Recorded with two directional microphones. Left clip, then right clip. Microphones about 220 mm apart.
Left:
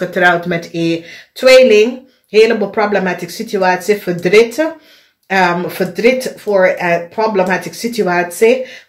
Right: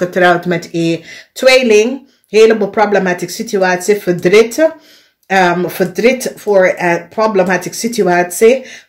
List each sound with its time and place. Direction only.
0.0 s speech: 50° right (ahead or behind)